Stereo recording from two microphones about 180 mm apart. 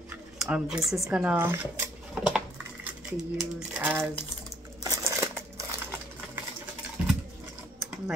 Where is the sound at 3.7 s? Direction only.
10° right (ahead or behind).